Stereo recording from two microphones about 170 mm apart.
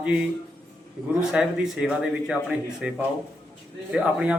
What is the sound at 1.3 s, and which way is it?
A man's voice, 5° right (ahead or behind).